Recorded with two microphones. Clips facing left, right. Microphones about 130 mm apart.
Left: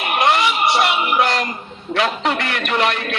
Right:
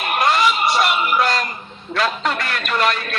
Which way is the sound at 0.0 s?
20° left (ahead or behind).